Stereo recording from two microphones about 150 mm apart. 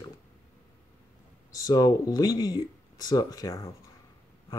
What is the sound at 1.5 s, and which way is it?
Speech, 25° left (ahead or behind).